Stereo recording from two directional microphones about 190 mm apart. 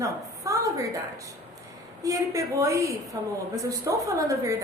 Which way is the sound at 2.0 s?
15° right (ahead or behind).